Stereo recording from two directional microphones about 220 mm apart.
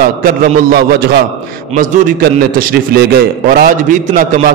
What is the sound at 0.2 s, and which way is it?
A man's voice, 40° right (ahead or behind).